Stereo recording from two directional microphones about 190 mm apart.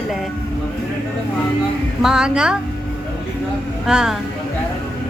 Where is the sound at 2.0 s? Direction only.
5° right (ahead or behind).